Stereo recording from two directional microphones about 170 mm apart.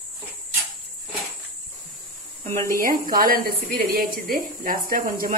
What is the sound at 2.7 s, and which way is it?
A woman's voice, 55° right (ahead or behind).